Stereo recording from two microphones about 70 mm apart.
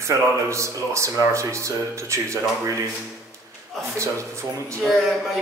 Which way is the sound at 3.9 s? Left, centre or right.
Right.